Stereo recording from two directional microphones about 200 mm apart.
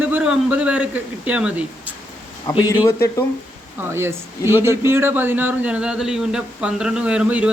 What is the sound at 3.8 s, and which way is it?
Speech, 10° right (ahead or behind).